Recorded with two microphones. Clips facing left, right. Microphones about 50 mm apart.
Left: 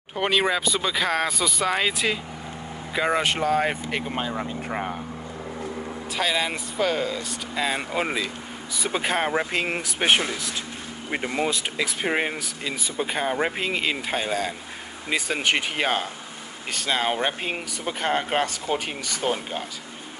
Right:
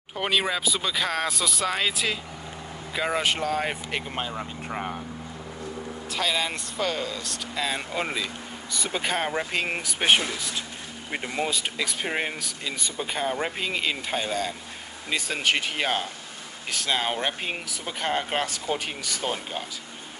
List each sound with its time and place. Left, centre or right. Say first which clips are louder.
0.1 s speech: left 3 dB; centre
4.5 s speech: left 4 dB; centre
6.1 s speech: left 2 dB; centre